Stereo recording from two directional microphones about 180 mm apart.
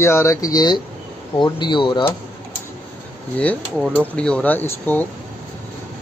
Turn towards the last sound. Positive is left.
turn(degrees=10)  # may be behind; listen again after turning